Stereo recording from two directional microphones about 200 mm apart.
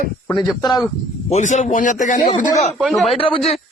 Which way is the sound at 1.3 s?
40° left (ahead or behind).